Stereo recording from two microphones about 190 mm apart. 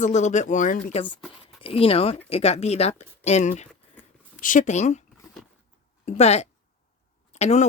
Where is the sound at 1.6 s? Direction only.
30° left (ahead or behind).